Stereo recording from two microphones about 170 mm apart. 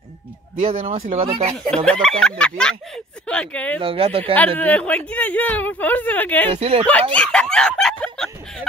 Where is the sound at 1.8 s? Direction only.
5° left (ahead or behind).